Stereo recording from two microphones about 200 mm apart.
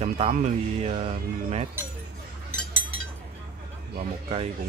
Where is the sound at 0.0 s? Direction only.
35° right (ahead or behind).